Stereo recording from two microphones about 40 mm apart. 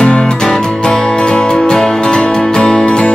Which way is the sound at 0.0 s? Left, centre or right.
Left.